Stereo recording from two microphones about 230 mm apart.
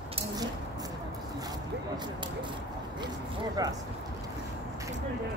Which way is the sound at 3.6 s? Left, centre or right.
Centre.